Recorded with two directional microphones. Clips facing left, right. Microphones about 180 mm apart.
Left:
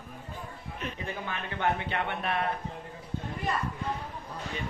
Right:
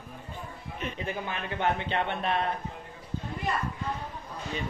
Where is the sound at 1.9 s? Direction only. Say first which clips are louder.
Right 3 dB; 25° right (ahead or behind).